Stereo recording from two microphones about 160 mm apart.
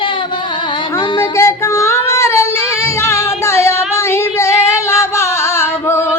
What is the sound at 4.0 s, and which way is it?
Singing, 15° left (ahead or behind).